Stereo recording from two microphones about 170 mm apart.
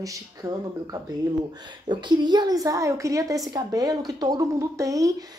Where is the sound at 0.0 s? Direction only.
20° right (ahead or behind).